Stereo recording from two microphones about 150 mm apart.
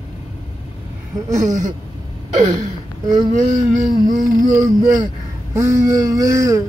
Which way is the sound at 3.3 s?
50° right (ahead or behind).